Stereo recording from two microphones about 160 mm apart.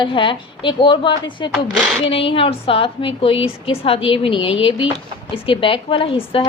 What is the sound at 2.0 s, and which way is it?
A woman's voice, 35° left (ahead or behind).